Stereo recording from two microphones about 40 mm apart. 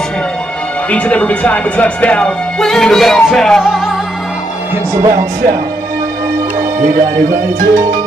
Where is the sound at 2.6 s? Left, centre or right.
Centre.